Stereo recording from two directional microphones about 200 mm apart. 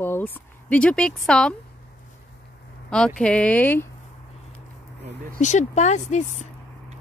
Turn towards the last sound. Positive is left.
turn(degrees=35)  # may be behind; listen again after turning